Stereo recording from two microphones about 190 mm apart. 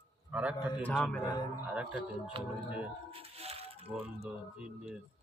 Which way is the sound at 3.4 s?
30° right (ahead or behind).